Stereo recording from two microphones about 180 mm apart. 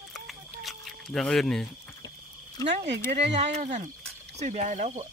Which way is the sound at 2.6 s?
20° left (ahead or behind).